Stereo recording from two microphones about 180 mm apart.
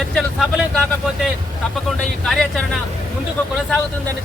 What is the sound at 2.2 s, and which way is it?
Speech, centre (ahead or behind).